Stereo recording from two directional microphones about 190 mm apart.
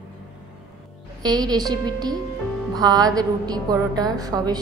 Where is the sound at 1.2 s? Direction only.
20° right (ahead or behind).